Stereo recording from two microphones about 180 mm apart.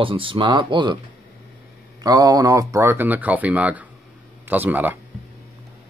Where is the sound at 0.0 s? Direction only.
30° right (ahead or behind).